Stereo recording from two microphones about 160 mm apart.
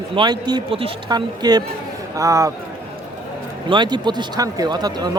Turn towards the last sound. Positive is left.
turn(degrees=-25)  # may be behind; listen again after turning